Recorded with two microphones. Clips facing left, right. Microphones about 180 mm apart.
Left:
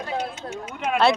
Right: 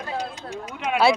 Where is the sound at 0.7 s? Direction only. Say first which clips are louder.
Even; centre (ahead or behind).